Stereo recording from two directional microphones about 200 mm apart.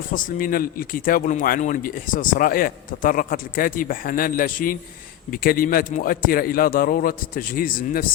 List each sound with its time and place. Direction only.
0.1 s speech: 45° left (ahead or behind)